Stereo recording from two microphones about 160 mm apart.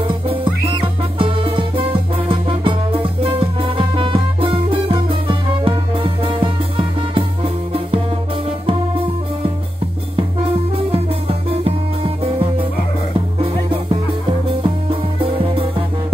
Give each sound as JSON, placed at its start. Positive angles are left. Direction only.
{"t": 0.3, "sound": "music", "side_deg": -35}
{"t": 10.9, "sound": "music", "side_deg": -35}
{"t": 13.4, "sound": "music", "side_deg": -35}